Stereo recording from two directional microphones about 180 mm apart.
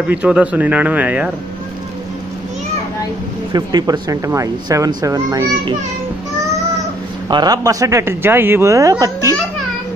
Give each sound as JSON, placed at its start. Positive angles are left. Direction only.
{"t": 0.1, "sound": "a man's voice", "side_deg": -5}
{"t": 3.5, "sound": "speech", "side_deg": -25}
{"t": 7.2, "sound": "a man's voice", "side_deg": -25}